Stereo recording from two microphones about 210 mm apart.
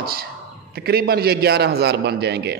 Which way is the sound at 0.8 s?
50° right (ahead or behind).